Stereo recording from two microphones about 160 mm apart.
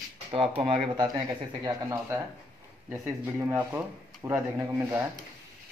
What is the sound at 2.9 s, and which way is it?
Speech, 15° right (ahead or behind).